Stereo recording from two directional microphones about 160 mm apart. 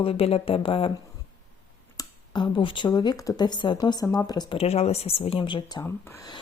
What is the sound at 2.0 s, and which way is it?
Speech, 30° left (ahead or behind).